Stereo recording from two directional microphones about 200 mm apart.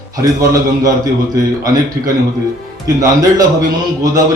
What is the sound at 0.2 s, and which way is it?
A man's voice, 15° right (ahead or behind).